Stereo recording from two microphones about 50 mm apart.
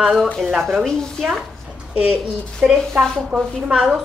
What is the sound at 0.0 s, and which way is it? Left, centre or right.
Speech, centre.